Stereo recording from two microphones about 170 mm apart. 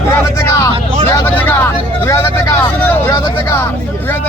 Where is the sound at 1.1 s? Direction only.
10° left (ahead or behind).